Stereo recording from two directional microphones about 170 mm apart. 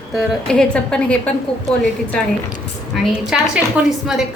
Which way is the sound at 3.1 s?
5° right (ahead or behind).